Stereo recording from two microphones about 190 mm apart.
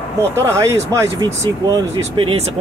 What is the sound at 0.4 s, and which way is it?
Speech, 15° right (ahead or behind).